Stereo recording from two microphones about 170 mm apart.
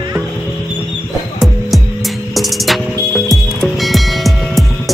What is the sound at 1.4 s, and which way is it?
Music, centre (ahead or behind).